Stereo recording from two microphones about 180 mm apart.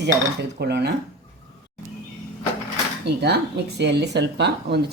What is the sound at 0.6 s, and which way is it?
Speech, 65° right (ahead or behind).